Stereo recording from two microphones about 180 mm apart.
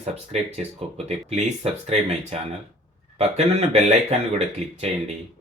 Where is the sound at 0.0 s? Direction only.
35° right (ahead or behind).